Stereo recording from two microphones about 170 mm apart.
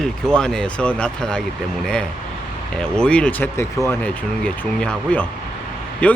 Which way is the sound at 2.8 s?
5° left (ahead or behind).